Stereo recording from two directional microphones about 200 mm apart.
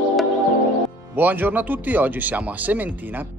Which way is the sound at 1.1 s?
10° right (ahead or behind).